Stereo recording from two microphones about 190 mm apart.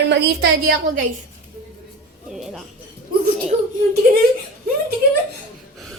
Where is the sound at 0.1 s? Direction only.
60° right (ahead or behind).